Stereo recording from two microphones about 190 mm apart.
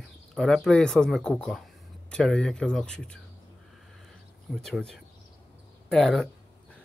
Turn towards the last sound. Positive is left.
turn(degrees=5)  # may be behind; listen again after turning